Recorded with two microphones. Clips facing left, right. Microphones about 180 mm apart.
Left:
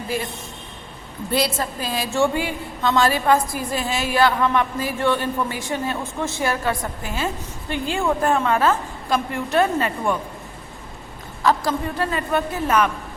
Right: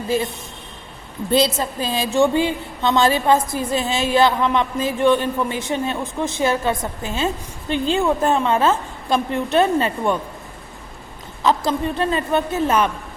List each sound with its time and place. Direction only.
1.3 s a woman's voice: 20° right (ahead or behind)
11.4 s a woman's voice: 25° right (ahead or behind)